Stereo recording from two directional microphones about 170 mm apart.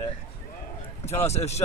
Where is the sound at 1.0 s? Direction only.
40° left (ahead or behind).